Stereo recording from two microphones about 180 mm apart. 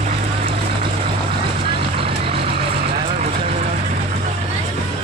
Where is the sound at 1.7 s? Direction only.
30° right (ahead or behind).